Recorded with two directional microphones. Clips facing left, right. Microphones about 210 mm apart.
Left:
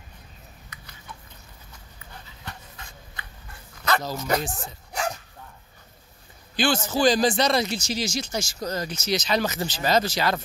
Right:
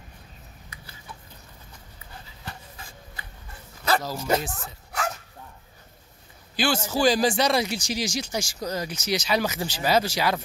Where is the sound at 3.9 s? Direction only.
5° right (ahead or behind).